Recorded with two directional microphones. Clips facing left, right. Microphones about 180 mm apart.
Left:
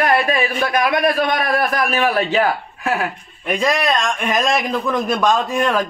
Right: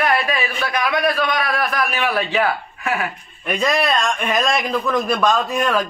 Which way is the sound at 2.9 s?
5° left (ahead or behind).